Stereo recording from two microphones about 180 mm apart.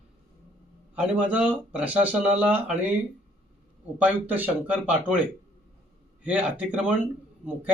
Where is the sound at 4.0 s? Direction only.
10° right (ahead or behind).